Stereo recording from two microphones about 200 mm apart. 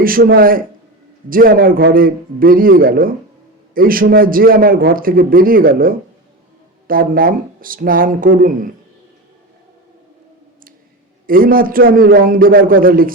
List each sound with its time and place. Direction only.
0.0 s a man's voice: 45° right (ahead or behind)
11.3 s a man's voice: 45° right (ahead or behind)